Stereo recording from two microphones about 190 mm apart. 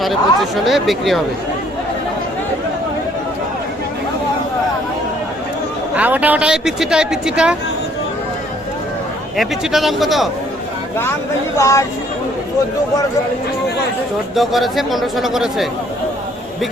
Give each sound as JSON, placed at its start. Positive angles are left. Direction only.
{"t": 0.0, "sound": "speech", "side_deg": 0}
{"t": 6.0, "sound": "speech", "side_deg": -10}
{"t": 9.4, "sound": "speech", "side_deg": 0}
{"t": 11.5, "sound": "speech", "side_deg": 15}
{"t": 14.3, "sound": "speech", "side_deg": 0}